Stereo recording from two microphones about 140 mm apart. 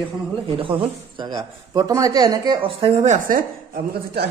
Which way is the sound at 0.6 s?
40° right (ahead or behind).